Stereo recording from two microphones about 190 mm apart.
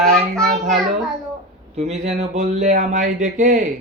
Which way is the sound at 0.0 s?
Centre (ahead or behind).